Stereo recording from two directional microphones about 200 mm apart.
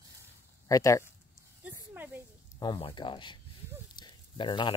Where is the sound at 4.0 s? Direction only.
20° left (ahead or behind).